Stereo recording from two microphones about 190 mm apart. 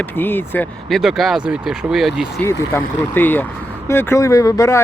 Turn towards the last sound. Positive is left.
turn(degrees=15)  # may be behind; listen again after turning